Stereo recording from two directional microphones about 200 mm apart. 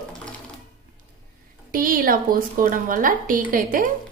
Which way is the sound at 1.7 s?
45° right (ahead or behind).